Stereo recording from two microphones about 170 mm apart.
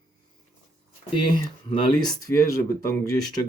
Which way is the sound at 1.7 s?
30° left (ahead or behind).